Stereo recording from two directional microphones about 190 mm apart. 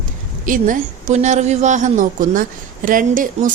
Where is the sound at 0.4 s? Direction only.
45° right (ahead or behind).